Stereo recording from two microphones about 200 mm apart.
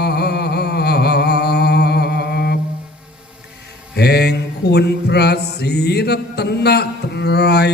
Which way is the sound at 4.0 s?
55° left (ahead or behind).